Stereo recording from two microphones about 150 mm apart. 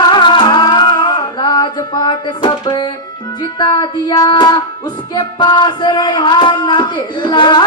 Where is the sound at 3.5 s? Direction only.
30° left (ahead or behind).